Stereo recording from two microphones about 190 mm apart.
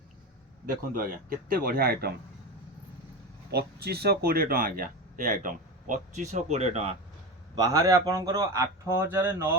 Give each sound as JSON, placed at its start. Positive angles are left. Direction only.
{"t": 0.9, "sound": "speech", "side_deg": -50}
{"t": 3.5, "sound": "speech", "side_deg": -60}
{"t": 7.5, "sound": "speech", "side_deg": -20}